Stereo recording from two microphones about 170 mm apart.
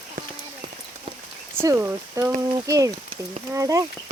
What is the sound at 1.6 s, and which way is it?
Speech, 15° right (ahead or behind).